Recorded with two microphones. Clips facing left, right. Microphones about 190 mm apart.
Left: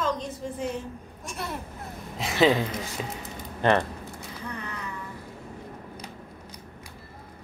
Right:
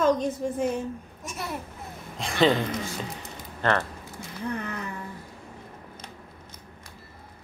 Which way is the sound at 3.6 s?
15° left (ahead or behind).